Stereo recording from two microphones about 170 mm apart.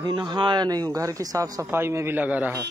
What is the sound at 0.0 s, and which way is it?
A man's voice, 25° right (ahead or behind).